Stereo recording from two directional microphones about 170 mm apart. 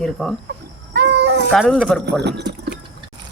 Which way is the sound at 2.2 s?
85° right.